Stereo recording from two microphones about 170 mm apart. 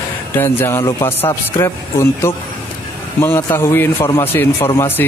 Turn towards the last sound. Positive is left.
turn(degrees=15)  # may be behind; listen again after turning